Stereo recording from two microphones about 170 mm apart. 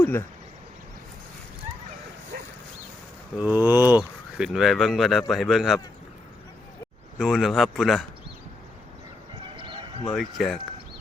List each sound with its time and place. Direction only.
0.0 s speech: 15° left (ahead or behind)
2.3 s dog: 65° right (ahead or behind)
3.3 s speech: 10° right (ahead or behind)
7.2 s speech: centre (ahead or behind)
9.6 s horse: 30° right (ahead or behind)
10.1 s speech: centre (ahead or behind)